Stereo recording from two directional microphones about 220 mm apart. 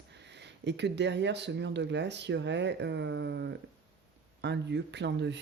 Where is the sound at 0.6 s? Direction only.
50° right (ahead or behind).